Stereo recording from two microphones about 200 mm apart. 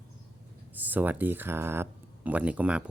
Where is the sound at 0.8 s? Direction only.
10° right (ahead or behind).